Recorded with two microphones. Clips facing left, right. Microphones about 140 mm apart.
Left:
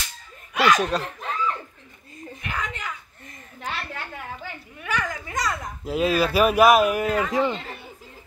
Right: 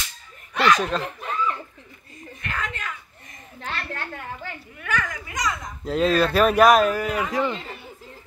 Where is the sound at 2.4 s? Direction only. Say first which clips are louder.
Even; 15° left (ahead or behind).